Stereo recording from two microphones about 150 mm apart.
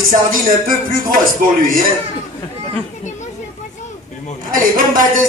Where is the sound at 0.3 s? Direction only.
70° right (ahead or behind).